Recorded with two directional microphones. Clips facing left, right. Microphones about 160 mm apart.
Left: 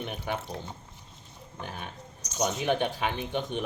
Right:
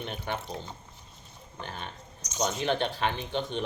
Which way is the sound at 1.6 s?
10° left (ahead or behind).